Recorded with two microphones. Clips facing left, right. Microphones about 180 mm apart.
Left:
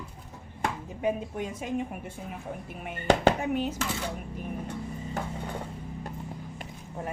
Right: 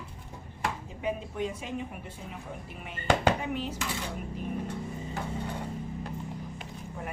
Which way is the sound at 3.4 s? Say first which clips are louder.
Left 5 dB; 50° left (ahead or behind).